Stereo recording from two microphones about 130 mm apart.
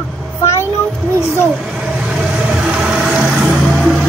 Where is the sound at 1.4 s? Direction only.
5° right (ahead or behind).